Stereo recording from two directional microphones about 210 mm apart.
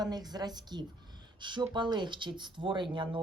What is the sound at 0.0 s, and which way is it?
Speech, 20° right (ahead or behind).